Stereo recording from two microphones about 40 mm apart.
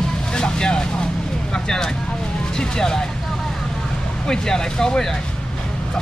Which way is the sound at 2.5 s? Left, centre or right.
Centre.